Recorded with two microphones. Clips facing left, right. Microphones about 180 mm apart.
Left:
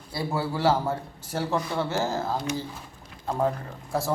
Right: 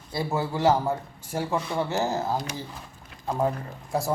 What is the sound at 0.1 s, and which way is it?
A man's voice, 20° right (ahead or behind).